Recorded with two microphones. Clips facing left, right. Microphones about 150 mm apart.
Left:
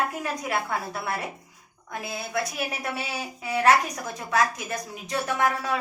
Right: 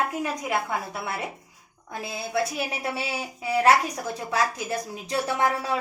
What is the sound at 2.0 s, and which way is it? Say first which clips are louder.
A woman's voice: right 3 dB; 25° right (ahead or behind).